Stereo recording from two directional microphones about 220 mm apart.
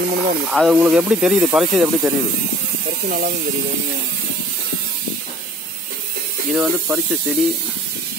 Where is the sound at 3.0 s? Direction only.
40° right (ahead or behind).